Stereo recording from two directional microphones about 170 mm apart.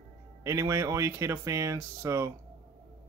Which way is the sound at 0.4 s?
15° right (ahead or behind).